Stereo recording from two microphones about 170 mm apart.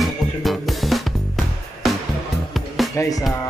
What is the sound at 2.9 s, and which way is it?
Music, 20° left (ahead or behind).